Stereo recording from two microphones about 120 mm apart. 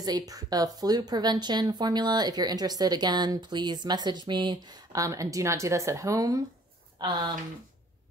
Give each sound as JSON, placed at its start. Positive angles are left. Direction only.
{"t": 0.0, "sound": "a woman's voice", "side_deg": -30}